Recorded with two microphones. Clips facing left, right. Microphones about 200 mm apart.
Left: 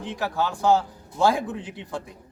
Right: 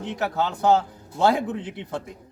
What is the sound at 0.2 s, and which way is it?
Speech, 20° right (ahead or behind).